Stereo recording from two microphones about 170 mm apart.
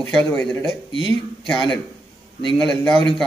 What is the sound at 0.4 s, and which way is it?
Speech, 5° left (ahead or behind).